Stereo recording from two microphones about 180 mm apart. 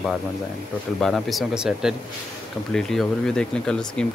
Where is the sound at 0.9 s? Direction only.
Centre (ahead or behind).